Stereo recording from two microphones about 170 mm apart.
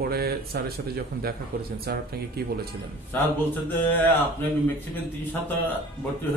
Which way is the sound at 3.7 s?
10° left (ahead or behind).